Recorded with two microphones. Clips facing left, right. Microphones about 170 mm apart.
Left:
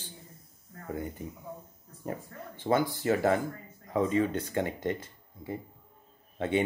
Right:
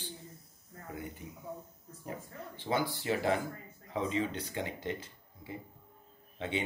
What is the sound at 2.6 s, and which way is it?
Speech, 50° left (ahead or behind).